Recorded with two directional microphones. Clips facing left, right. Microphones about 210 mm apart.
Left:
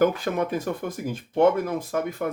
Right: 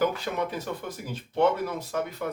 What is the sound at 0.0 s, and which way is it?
Speech, 50° left (ahead or behind).